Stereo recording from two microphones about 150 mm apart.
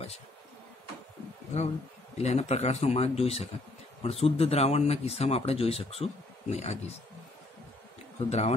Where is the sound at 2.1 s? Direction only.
45° left (ahead or behind).